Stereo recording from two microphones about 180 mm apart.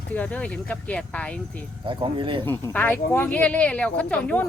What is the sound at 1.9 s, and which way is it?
Speech, 25° right (ahead or behind).